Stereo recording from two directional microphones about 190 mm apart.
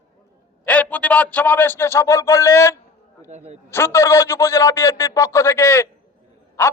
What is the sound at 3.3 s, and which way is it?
Speech, 35° right (ahead or behind).